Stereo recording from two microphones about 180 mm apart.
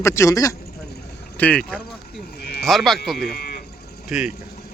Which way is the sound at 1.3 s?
5° left (ahead or behind).